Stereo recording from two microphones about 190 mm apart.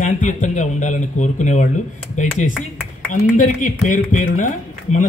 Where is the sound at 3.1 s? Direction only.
45° left (ahead or behind).